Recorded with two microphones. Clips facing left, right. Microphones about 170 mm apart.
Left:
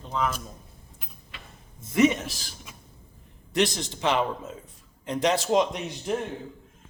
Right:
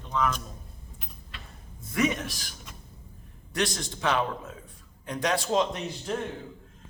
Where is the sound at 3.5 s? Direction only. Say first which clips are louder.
Left 4 dB; 20° left (ahead or behind).